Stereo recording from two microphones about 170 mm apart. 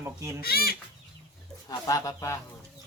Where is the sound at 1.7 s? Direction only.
20° left (ahead or behind).